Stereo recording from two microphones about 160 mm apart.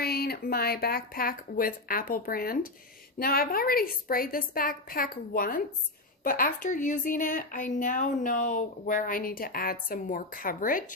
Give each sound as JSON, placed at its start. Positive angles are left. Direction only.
{"t": 0.0, "sound": "speech", "side_deg": 75}